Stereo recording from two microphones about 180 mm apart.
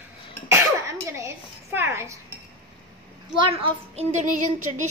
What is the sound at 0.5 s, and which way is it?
Speech, 15° right (ahead or behind).